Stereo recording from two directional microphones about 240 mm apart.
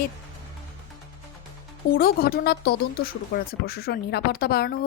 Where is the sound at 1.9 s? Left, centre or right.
Left.